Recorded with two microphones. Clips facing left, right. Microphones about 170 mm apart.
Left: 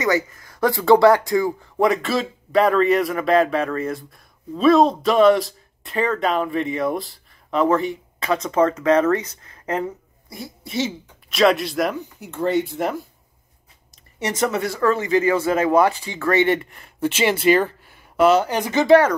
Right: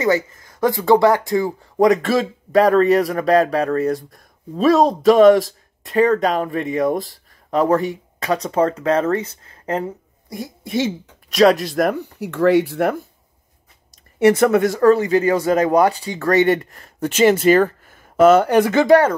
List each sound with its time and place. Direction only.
0.0 s speech: 25° right (ahead or behind)
1.8 s speech: 45° right (ahead or behind)
10.3 s speech: 45° right (ahead or behind); by 12.9 s 65° right (ahead or behind)
14.2 s speech: 60° right (ahead or behind)